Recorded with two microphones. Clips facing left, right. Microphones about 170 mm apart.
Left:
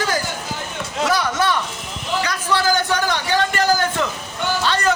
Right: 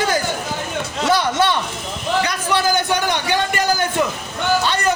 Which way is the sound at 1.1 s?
25° right (ahead or behind).